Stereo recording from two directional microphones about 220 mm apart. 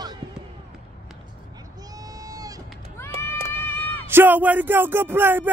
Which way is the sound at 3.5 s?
10° left (ahead or behind).